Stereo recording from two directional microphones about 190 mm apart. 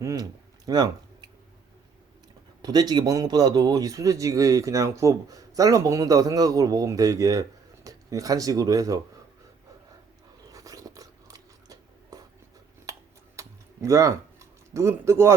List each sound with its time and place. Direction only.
0.0 s a sound: 20° right (ahead or behind)
2.6 s speech: 20° right (ahead or behind)
10.5 s biting: 20° right (ahead or behind)
12.8 s typing: 15° right (ahead or behind)